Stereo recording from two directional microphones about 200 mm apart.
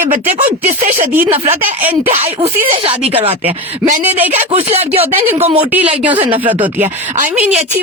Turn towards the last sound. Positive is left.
turn(degrees=-10)  # may be behind; listen again after turning